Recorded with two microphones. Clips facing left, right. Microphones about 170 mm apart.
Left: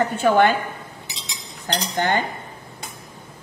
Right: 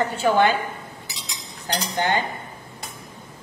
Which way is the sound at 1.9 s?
50° left (ahead or behind).